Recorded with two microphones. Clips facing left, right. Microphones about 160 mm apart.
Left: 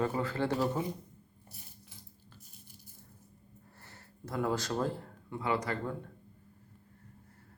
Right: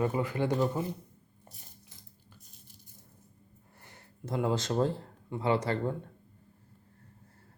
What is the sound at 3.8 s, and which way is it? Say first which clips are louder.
Speech: right 5 dB; 20° right (ahead or behind).